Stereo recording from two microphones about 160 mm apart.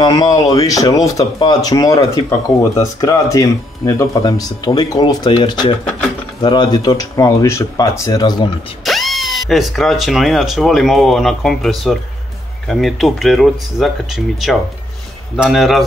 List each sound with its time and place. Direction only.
0.0 s speech: 25° left (ahead or behind)
8.8 s speech: centre (ahead or behind)